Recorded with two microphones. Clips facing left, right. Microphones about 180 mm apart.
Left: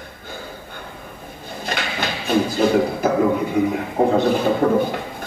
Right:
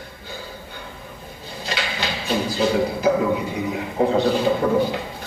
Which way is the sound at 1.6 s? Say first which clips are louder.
Left 2 dB; 55° left (ahead or behind).